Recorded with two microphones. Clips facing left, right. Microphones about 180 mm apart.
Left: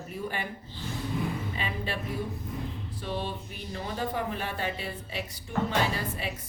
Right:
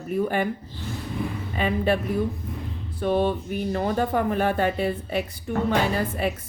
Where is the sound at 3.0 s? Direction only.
55° right (ahead or behind).